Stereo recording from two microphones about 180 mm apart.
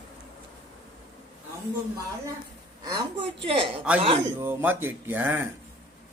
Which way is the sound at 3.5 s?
30° right (ahead or behind).